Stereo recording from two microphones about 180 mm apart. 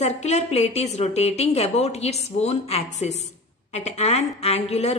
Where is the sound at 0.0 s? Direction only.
40° left (ahead or behind).